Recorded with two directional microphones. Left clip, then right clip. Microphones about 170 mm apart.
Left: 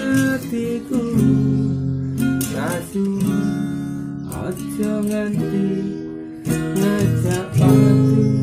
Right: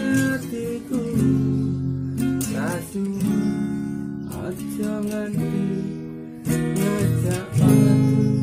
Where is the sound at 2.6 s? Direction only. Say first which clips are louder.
Left 4 dB; centre (ahead or behind).